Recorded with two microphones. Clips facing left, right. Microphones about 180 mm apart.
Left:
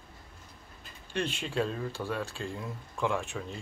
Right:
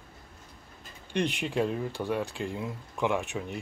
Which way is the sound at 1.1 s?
15° right (ahead or behind).